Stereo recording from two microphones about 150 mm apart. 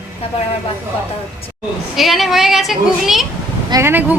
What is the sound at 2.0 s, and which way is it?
Speech, centre (ahead or behind).